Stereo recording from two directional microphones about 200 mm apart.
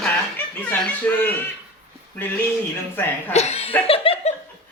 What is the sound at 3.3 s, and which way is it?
Speech, 35° left (ahead or behind).